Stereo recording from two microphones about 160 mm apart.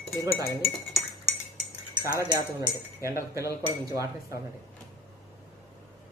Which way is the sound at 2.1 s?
20° right (ahead or behind).